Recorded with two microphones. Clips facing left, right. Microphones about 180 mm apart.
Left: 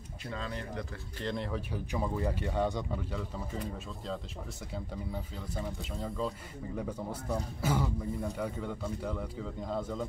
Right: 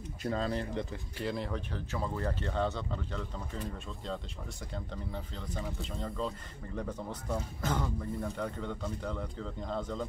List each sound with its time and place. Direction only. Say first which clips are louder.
0.2 s speech: right 6 dB; 40° right (ahead or behind)
1.2 s speech: even; centre (ahead or behind)
1.7 s speech: left 2 dB; 10° left (ahead or behind)
4.7 s speech: left 2 dB; 10° left (ahead or behind)